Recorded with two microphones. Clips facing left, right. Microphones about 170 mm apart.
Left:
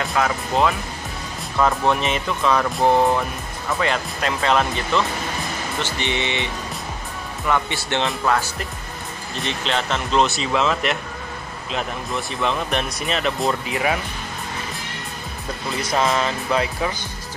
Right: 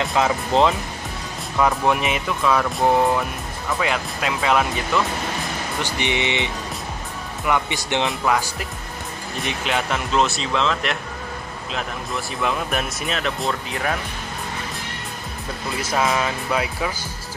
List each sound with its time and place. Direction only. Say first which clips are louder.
0.0 s speech: right 2 dB; 20° right (ahead or behind)
1.6 s speech: even; 10° right (ahead or behind)
15.8 s speech: left 1 dB; 5° right (ahead or behind)